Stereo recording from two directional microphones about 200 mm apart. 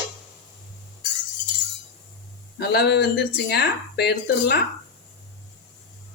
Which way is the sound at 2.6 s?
50° left (ahead or behind).